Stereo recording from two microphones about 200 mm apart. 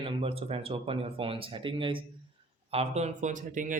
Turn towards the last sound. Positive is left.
turn(degrees=-40)  # may be behind; listen again after turning